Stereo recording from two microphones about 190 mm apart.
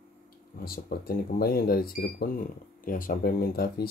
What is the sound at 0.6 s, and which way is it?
Speech, 50° left (ahead or behind).